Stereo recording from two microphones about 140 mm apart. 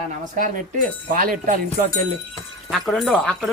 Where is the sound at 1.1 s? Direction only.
80° right.